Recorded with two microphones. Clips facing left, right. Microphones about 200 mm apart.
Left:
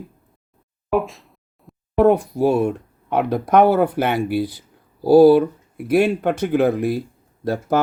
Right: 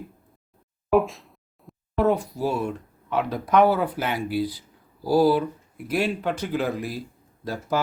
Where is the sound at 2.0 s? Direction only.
60° left (ahead or behind).